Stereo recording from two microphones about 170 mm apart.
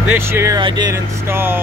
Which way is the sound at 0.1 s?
15° right (ahead or behind).